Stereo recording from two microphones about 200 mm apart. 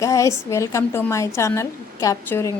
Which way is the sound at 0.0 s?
15° left (ahead or behind).